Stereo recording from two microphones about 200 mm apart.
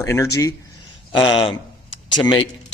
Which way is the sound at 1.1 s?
25° left (ahead or behind).